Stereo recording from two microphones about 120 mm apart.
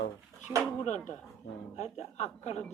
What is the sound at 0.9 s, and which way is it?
Speech, 80° left.